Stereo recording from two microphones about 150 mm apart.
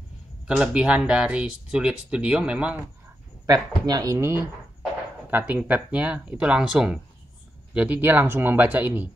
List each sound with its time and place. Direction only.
0.5 s speech: 5° right (ahead or behind)
3.4 s speech: 25° right (ahead or behind)
5.3 s speech: 10° right (ahead or behind)